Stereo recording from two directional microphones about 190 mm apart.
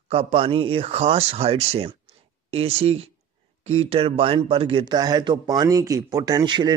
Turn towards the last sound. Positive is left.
turn(degrees=-20)  # may be behind; listen again after turning